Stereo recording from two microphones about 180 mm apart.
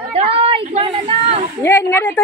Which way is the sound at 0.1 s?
35° right (ahead or behind).